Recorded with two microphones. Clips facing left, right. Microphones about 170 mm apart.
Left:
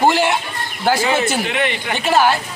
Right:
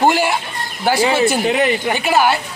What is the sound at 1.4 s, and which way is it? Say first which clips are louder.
Speech: right 4 dB; 40° right (ahead or behind).